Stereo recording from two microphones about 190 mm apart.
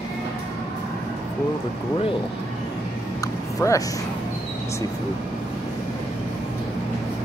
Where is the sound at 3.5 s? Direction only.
20° left (ahead or behind).